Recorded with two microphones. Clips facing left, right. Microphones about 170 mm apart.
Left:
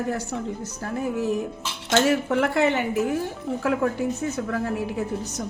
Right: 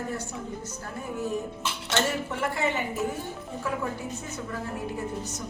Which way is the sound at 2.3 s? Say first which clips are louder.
Left 7 dB; 70° left (ahead or behind).